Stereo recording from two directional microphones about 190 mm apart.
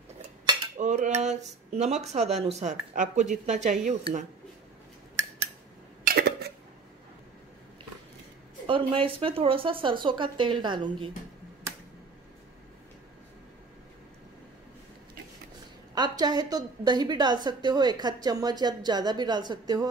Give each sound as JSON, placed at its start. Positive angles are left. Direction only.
{"t": 0.7, "sound": "speech", "side_deg": -40}
{"t": 6.0, "sound": "cough", "side_deg": -55}
{"t": 8.6, "sound": "a woman's voice", "side_deg": -30}
{"t": 15.9, "sound": "a woman's voice", "side_deg": -20}